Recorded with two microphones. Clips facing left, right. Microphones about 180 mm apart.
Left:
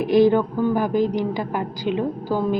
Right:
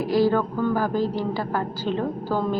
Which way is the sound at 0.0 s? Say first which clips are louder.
Left 4 dB; 20° left (ahead or behind).